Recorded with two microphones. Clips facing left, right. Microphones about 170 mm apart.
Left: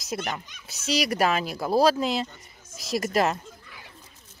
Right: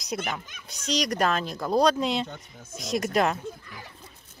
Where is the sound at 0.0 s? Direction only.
Centre (ahead or behind).